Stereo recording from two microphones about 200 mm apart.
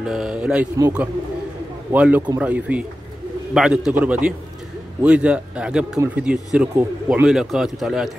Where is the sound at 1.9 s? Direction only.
10° right (ahead or behind).